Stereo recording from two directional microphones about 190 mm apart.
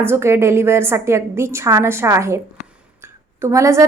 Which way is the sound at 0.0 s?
15° right (ahead or behind).